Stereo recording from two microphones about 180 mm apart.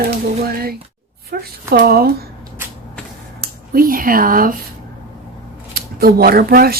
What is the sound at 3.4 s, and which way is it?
Speech, 55° right (ahead or behind).